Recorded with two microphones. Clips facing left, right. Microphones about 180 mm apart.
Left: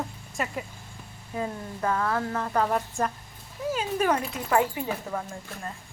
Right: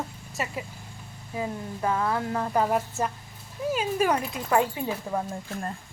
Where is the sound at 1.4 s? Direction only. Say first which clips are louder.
Even; 15° right (ahead or behind).